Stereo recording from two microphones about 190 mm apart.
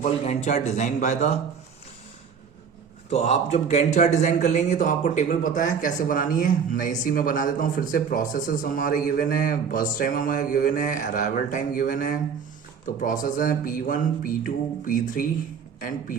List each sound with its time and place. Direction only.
0.0 s speech: 35° left (ahead or behind)
3.1 s a man's voice: 35° left (ahead or behind)